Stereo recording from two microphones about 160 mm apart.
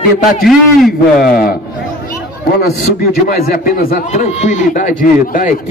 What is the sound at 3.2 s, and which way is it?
Speech, 70° left (ahead or behind).